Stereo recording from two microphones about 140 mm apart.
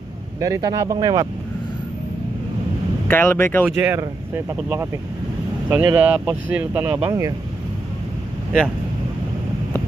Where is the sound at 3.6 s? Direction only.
15° right (ahead or behind).